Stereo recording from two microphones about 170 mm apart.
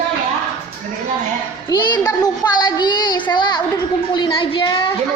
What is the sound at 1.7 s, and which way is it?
Child singing, 20° left (ahead or behind).